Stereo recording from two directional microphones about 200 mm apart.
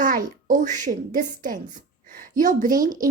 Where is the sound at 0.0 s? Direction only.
40° right (ahead or behind).